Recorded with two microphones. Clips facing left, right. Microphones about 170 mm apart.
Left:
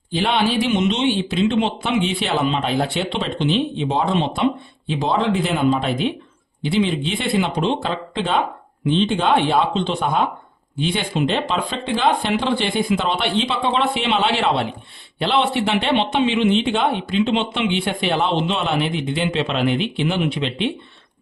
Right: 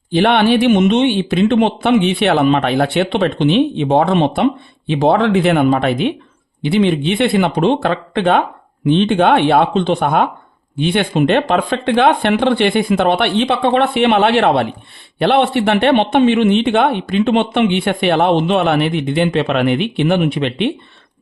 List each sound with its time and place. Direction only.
0.1 s speech: 60° right (ahead or behind)